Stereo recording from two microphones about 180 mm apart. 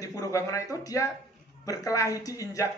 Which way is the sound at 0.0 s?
20° left (ahead or behind).